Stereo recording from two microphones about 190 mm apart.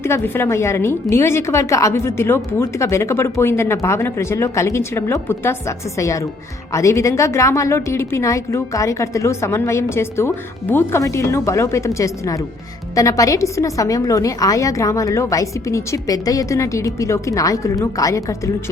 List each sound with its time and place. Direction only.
0.0 s a woman's voice: 15° left (ahead or behind)